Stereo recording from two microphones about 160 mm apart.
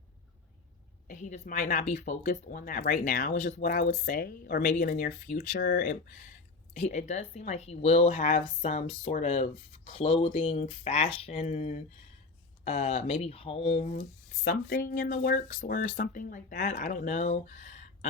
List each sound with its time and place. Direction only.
1.0 s speech: 50° left (ahead or behind); by 6.2 s 75° left (ahead or behind)
6.7 s speech: 45° left (ahead or behind)
14.4 s speech: 60° left (ahead or behind)
15.4 s speech: 55° left (ahead or behind)